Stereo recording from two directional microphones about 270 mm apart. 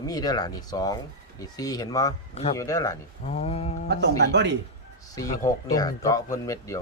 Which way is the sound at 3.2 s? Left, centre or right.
Left.